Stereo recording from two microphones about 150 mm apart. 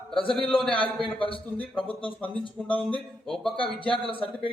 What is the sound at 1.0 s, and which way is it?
A man's voice, 35° left (ahead or behind).